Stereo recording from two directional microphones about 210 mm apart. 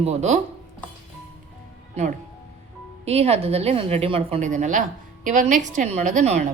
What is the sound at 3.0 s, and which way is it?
A woman's voice, 30° right (ahead or behind).